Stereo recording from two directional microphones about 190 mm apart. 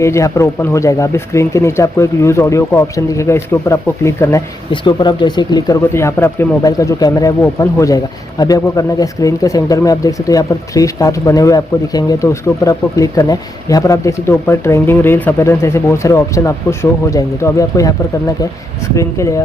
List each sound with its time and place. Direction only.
0.0 s speech: 15° left (ahead or behind)
18.9 s speech: 15° left (ahead or behind)